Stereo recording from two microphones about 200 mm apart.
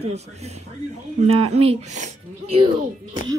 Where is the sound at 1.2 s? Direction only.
30° right (ahead or behind).